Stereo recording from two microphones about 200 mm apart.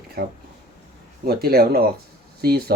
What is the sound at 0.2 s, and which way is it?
Speech, 50° right (ahead or behind).